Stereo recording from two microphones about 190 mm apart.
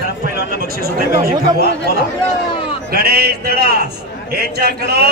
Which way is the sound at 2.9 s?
55° right (ahead or behind).